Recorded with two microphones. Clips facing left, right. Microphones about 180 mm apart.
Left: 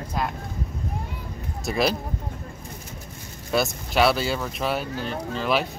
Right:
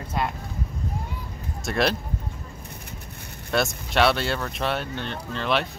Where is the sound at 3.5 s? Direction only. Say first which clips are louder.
Left 1 dB; centre (ahead or behind).